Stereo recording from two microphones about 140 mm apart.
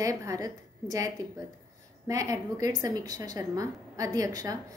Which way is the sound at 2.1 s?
25° right (ahead or behind).